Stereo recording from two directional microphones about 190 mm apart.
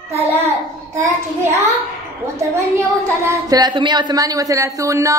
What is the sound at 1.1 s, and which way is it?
Speech, 15° right (ahead or behind).